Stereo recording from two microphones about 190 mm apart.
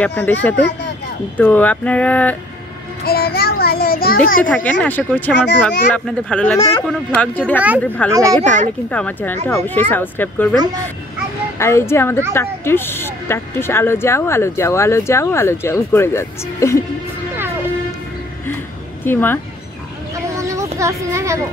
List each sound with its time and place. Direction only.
0.0 s speech: 10° left (ahead or behind)
3.1 s a child's voice: 55° left (ahead or behind)
4.8 s speech: 10° left (ahead or behind)
5.3 s a child's voice: 65° left (ahead or behind)
5.9 s speech: 5° left (ahead or behind)
8.1 s a child's voice: 15° right (ahead or behind)
8.4 s a child's voice: 40° right (ahead or behind)
8.9 s speech: 10° left (ahead or behind)
11.5 s speech: 15° left (ahead or behind)
19.0 s speech: 10° left (ahead or behind)
20.3 s a sound: 15° right (ahead or behind)